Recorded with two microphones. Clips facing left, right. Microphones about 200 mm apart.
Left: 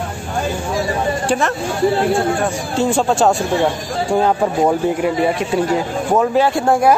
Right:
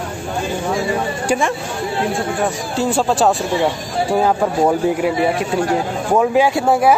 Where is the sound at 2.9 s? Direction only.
Centre (ahead or behind).